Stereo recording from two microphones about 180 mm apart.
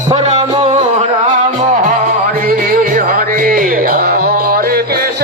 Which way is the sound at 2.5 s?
50° right (ahead or behind).